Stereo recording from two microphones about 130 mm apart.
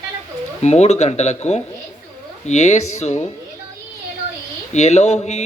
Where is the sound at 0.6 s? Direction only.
55° left (ahead or behind).